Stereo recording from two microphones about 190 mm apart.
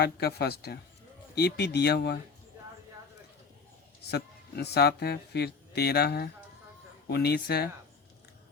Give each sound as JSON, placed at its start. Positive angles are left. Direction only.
{"t": 0.0, "sound": "speech", "side_deg": 55}
{"t": 4.1, "sound": "speech", "side_deg": 60}